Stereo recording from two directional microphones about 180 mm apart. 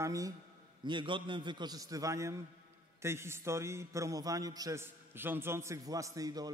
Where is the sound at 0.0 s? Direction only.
20° right (ahead or behind).